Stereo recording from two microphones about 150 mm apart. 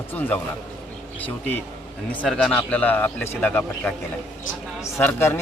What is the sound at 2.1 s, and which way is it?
A man's voice, 5° left (ahead or behind).